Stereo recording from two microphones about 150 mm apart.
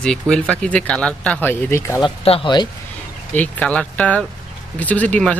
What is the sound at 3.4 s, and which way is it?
Speech, 10° left (ahead or behind).